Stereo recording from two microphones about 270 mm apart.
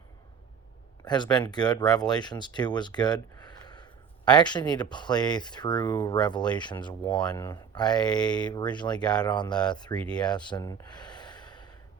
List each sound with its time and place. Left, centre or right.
1.0 s speech: centre
10.0 s speech: centre
10.2 s gasp: centre